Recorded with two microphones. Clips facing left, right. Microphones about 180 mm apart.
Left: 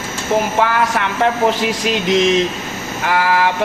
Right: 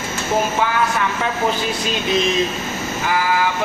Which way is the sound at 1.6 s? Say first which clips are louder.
Left 4 dB; 80° left.